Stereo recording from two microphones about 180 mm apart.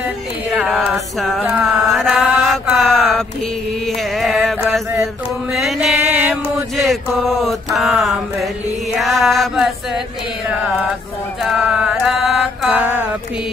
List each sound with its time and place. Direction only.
0.5 s mantra: centre (ahead or behind)
4.2 s music: centre (ahead or behind)
5.5 s chant: centre (ahead or behind)
6.8 s a sound: centre (ahead or behind)
9.0 s music: centre (ahead or behind)
11.4 s music: 5° right (ahead or behind)